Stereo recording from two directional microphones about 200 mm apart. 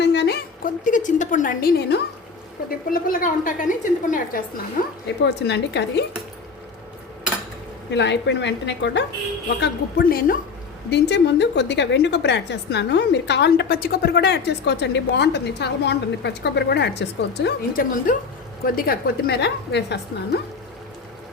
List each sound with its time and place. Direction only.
0.0 s a woman's voice: 60° left (ahead or behind); by 4.4 s 45° left (ahead or behind)
5.0 s a woman's voice: 60° left (ahead or behind)
7.9 s a woman's voice: 60° left (ahead or behind)
10.9 s a woman's voice: 60° left (ahead or behind)